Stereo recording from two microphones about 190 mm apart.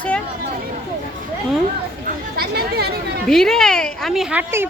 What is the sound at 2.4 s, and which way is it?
Speech, 55° right (ahead or behind).